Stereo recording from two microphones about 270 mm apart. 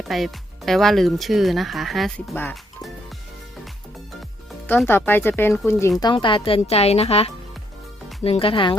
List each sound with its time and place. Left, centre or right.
0.1 s speech: centre
4.6 s speech: centre